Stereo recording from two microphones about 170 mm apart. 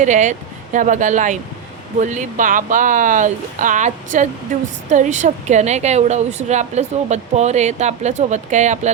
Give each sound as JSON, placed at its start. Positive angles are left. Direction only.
{"t": 0.0, "sound": "a woman's voice", "side_deg": -45}